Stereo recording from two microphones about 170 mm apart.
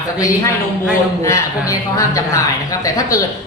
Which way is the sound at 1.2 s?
15° left (ahead or behind).